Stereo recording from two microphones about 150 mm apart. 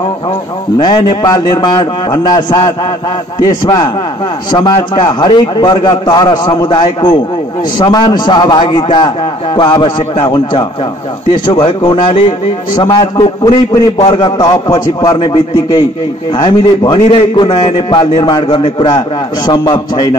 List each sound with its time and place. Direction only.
0.7 s a man's voice: 30° left (ahead or behind)